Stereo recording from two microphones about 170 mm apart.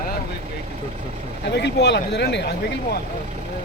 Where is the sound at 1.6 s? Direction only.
80° left.